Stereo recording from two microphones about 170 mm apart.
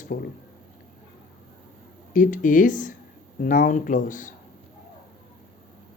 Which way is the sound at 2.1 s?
50° left (ahead or behind).